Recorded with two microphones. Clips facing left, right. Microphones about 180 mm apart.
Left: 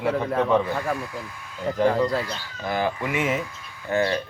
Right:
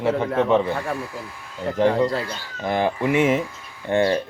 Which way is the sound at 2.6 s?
25° right (ahead or behind).